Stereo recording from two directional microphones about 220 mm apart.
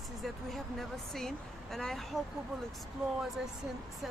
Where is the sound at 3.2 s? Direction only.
Centre (ahead or behind).